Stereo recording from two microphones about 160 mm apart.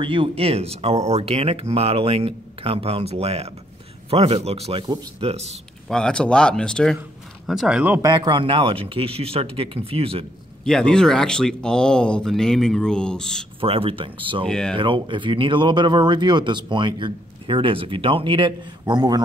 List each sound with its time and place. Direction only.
0.0 s speech: 30° right (ahead or behind)
5.9 s speech: 5° left (ahead or behind)
8.0 s speech: 30° right (ahead or behind)
10.6 s speech: 5° left (ahead or behind)
13.6 s speech: 35° right (ahead or behind)
14.5 s speech: 5° left (ahead or behind)
14.8 s speech: 30° right (ahead or behind)